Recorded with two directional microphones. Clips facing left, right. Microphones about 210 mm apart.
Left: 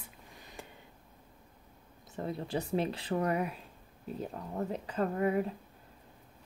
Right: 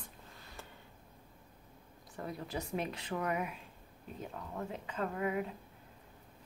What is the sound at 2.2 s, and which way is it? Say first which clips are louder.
Speech: left 5 dB; 30° left (ahead or behind).